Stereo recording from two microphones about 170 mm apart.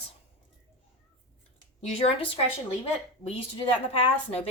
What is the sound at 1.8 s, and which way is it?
A woman's voice, 35° left (ahead or behind).